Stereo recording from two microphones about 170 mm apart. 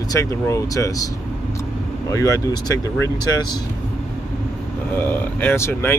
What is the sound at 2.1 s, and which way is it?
Speech, 20° left (ahead or behind).